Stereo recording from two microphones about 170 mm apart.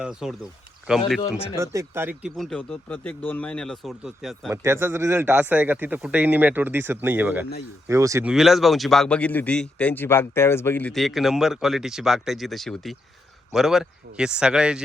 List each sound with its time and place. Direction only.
0.0 s a man's voice: 5° right (ahead or behind)
1.5 s a man's voice: 15° right (ahead or behind)
2.3 s a man's voice: centre (ahead or behind)
4.5 s a man's voice: 15° right (ahead or behind)
8.2 s a man's voice: 5° right (ahead or behind)